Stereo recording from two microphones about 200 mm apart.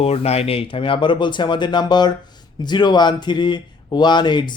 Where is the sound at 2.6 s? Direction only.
20° left (ahead or behind).